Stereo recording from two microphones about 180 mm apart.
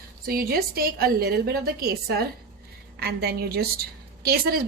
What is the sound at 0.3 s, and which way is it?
A woman's voice, 55° right (ahead or behind).